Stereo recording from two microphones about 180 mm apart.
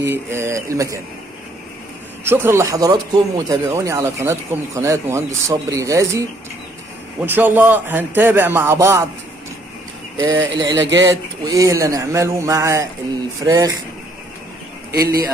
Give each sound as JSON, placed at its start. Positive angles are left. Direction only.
{"t": 0.0, "sound": "speech", "side_deg": -15}
{"t": 2.2, "sound": "speech", "side_deg": -15}
{"t": 7.2, "sound": "speech", "side_deg": -10}
{"t": 10.1, "sound": "speech", "side_deg": -15}
{"t": 10.7, "sound": "speech", "side_deg": -90}
{"t": 11.0, "sound": "speech", "side_deg": -20}